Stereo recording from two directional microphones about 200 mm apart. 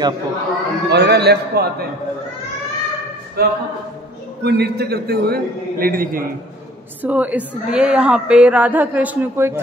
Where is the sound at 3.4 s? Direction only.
50° right (ahead or behind).